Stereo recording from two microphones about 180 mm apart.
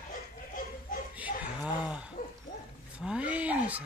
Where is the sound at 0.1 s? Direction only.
50° left (ahead or behind).